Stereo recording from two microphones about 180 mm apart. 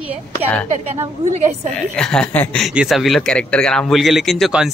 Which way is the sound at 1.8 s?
5° left (ahead or behind).